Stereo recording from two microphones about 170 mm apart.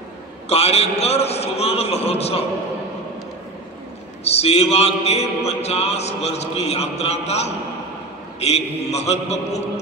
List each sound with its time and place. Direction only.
0.5 s a man's voice: 40° left (ahead or behind)
4.2 s a man's voice: 40° left (ahead or behind)